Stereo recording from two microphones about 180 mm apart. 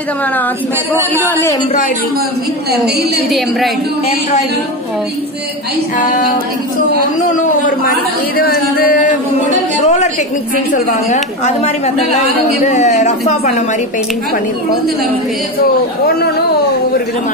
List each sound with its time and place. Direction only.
1.1 s a man's voice: 10° left (ahead or behind)
3.3 s a woman's voice: centre (ahead or behind)
7.2 s a man's voice: 45° left (ahead or behind)
8.4 s a sound: 55° left (ahead or behind)
9.5 s a woman's voice: 40° left (ahead or behind)
11.4 s a woman's voice: 35° left (ahead or behind)